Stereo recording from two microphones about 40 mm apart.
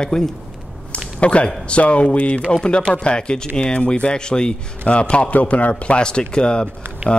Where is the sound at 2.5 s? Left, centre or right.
Left.